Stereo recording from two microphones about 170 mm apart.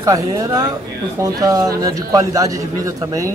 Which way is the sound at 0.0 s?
20° right (ahead or behind).